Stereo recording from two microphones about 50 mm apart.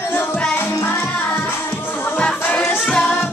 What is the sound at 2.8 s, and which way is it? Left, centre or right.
Music, centre.